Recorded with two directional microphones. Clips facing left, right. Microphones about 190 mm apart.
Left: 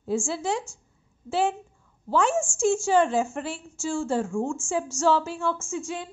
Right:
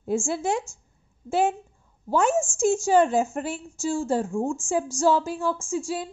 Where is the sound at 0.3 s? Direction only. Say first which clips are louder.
Right 2 dB; 50° right (ahead or behind).